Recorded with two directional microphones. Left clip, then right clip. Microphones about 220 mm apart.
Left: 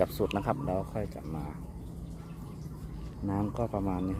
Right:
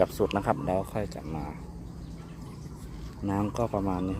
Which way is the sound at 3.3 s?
15° right (ahead or behind).